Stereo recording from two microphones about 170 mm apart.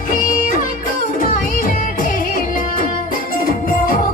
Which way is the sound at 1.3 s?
55° left (ahead or behind).